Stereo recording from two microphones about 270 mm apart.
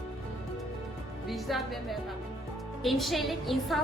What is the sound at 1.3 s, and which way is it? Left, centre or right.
A woman's voice, centre.